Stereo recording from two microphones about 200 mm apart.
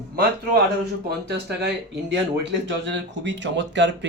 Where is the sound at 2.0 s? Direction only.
65° right (ahead or behind).